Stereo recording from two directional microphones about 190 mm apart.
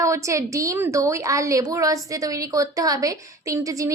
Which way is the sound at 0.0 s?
15° right (ahead or behind).